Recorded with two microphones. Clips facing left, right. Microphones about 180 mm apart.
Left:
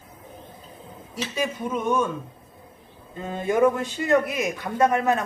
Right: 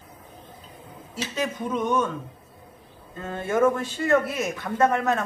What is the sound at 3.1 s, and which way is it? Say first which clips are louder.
A man's voice: left 2 dB; 15° left (ahead or behind).